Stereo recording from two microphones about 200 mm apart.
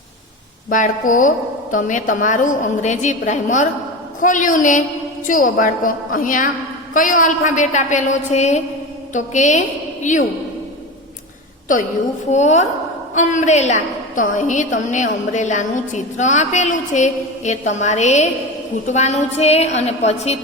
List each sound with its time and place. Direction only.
0.7 s a woman's voice: 40° left (ahead or behind)
12.3 s a woman's voice: 35° left (ahead or behind)